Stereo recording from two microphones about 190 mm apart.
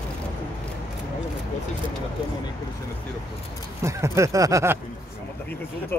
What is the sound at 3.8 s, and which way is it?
Speech, 15° right (ahead or behind).